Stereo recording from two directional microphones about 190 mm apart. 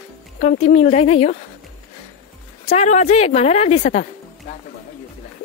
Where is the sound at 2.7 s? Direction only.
40° left (ahead or behind).